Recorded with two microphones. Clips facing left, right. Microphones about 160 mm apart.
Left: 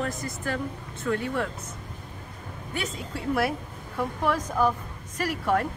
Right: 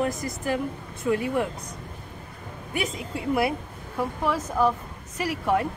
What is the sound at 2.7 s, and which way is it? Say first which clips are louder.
A woman's voice: right 3 dB; 10° right (ahead or behind).